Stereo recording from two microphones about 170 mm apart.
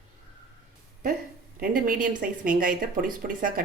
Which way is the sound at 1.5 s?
55° right (ahead or behind).